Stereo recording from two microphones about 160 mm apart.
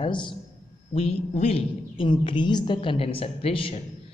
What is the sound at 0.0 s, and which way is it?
Speech, 30° left (ahead or behind).